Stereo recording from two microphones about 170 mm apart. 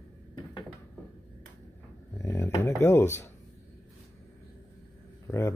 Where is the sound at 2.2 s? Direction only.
15° left (ahead or behind).